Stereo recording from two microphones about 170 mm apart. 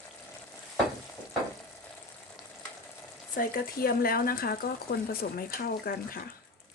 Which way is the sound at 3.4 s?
60° left (ahead or behind).